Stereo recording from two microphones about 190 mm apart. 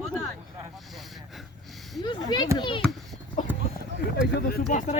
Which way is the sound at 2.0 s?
25° left (ahead or behind).